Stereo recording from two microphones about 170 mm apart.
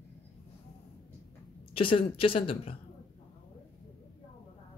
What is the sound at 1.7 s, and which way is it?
Speech, 30° left (ahead or behind).